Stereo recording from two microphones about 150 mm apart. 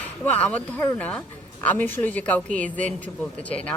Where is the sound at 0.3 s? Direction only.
10° left (ahead or behind).